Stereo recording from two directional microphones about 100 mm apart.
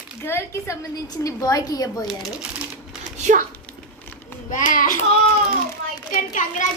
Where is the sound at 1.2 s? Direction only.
35° left (ahead or behind).